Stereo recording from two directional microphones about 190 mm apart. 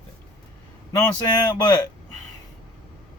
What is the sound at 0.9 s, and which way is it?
Speech, 20° left (ahead or behind).